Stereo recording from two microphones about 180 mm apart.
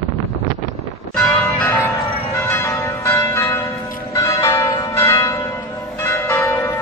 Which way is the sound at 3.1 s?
15° left (ahead or behind).